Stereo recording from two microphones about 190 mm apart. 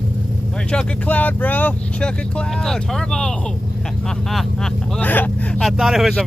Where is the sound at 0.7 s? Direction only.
5° left (ahead or behind).